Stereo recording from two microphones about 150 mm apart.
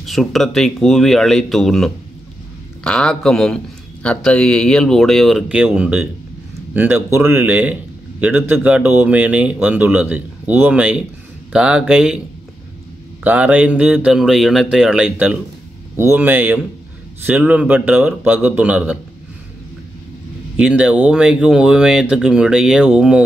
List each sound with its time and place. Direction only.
0.0 s a man's voice: centre (ahead or behind)
13.2 s a man's voice: 10° right (ahead or behind)
20.5 s a man's voice: 5° right (ahead or behind)